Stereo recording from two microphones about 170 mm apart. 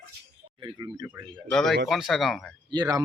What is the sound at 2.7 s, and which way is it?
Speech, 25° right (ahead or behind).